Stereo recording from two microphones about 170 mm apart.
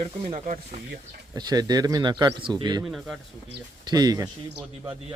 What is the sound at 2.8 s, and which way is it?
Speech, centre (ahead or behind).